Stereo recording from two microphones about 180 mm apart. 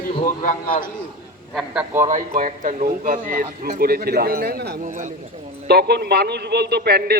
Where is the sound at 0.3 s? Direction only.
45° left (ahead or behind).